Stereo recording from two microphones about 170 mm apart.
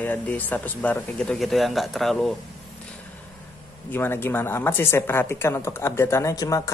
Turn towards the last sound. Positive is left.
turn(degrees=20)  # may be behind; listen again after turning